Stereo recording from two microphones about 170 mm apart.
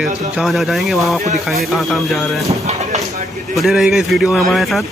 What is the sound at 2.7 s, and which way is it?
Speech, 40° right (ahead or behind).